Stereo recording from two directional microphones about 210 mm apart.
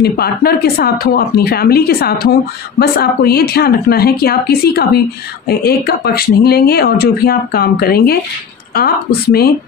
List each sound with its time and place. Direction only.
0.0 s speech: 45° left (ahead or behind)